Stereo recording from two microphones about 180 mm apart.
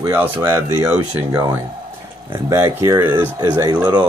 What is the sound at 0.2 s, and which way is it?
Speech, 15° right (ahead or behind).